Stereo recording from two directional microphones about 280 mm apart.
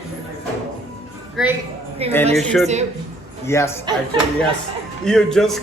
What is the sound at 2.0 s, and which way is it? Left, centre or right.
Speech, right.